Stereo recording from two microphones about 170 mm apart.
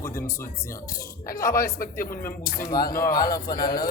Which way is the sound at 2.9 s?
55° left (ahead or behind).